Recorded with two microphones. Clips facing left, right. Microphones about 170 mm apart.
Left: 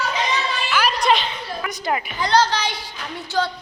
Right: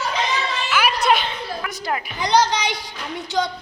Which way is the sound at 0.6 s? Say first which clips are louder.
Even; 5° right (ahead or behind).